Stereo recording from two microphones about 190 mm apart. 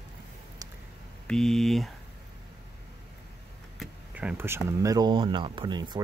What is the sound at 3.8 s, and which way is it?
Speech, 5° right (ahead or behind).